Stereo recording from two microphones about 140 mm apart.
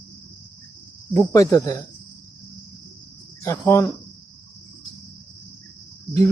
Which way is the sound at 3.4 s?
20° left (ahead or behind).